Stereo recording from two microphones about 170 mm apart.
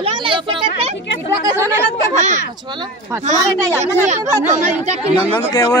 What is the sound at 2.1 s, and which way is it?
Speech, 45° right (ahead or behind).